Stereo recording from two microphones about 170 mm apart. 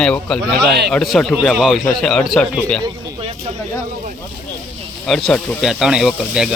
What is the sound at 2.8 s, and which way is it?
Speech, 30° right (ahead or behind).